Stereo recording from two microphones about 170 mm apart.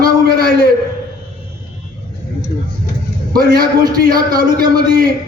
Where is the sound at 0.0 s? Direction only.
60° right (ahead or behind).